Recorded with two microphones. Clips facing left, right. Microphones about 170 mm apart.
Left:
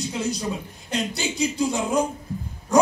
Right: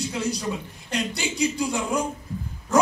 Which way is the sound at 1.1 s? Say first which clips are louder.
Even; 20° left (ahead or behind).